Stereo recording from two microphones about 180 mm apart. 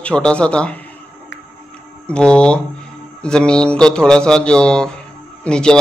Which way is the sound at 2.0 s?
5° left (ahead or behind).